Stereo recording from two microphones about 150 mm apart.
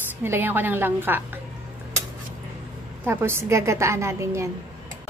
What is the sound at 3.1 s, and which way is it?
A woman's voice, 15° right (ahead or behind).